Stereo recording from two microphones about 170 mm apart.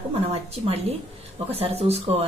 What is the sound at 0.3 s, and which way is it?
A woman's voice, 35° right (ahead or behind).